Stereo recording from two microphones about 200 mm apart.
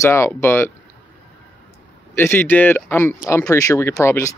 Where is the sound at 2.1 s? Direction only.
10° left (ahead or behind).